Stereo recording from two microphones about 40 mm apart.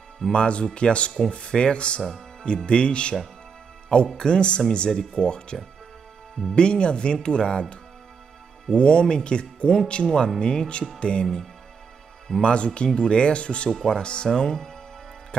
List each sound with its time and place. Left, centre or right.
0.3 s speech: left
8.6 s speech: left
12.4 s speech: left
13.7 s speech: centre